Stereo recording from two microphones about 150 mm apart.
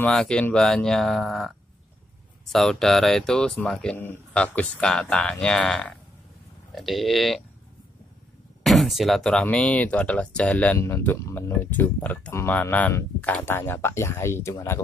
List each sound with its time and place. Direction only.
0.0 s speech: 5° left (ahead or behind)
8.6 s speech: centre (ahead or behind); by 14.8 s 20° left (ahead or behind)